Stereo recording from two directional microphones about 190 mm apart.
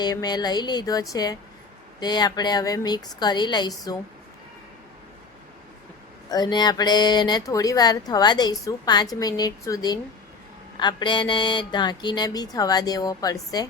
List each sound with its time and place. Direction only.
0.0 s speech: 20° left (ahead or behind)
6.3 s speech: 20° left (ahead or behind)